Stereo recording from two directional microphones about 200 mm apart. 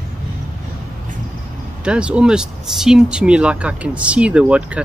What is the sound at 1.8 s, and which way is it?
Speech, 5° right (ahead or behind).